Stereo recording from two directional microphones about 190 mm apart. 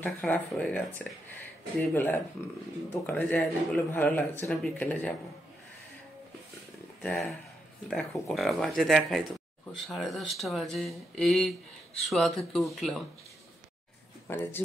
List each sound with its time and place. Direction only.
0.0 s speech: 5° left (ahead or behind)
7.0 s speech: 5° left (ahead or behind)
14.2 s speech: 10° left (ahead or behind)